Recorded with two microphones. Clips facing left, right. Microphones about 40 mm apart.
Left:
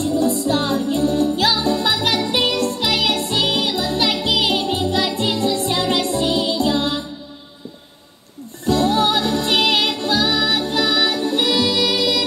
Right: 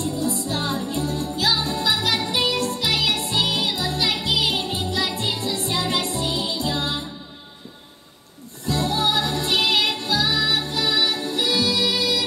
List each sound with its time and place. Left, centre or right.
0.0 s music: left
8.6 s music: left